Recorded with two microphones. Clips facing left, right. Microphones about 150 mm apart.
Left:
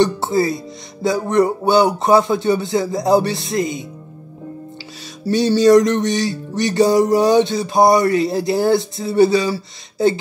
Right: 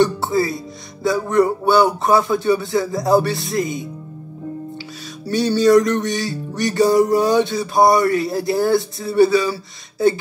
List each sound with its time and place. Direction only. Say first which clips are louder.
0.0 s music: left 1 dB; 25° left (ahead or behind)
5.3 s music: left 2 dB; 20° left (ahead or behind)